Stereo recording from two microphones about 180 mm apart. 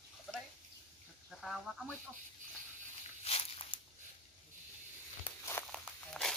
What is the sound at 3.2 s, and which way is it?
Walk, 35° left (ahead or behind).